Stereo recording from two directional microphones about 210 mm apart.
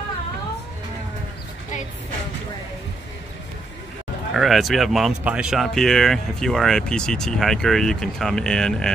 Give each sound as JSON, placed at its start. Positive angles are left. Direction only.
{"t": 4.3, "sound": "speech", "side_deg": 0}